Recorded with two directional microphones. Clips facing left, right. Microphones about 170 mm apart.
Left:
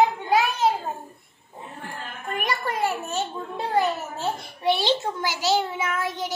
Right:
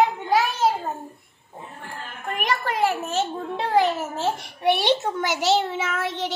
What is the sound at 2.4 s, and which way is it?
A child's voice, 85° right.